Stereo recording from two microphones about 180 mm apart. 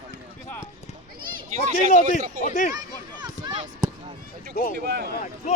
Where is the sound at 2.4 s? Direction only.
40° left (ahead or behind).